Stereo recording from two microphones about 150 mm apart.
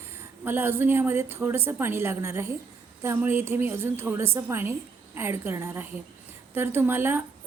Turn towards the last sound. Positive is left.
turn(degrees=-15)  # may be behind; listen again after turning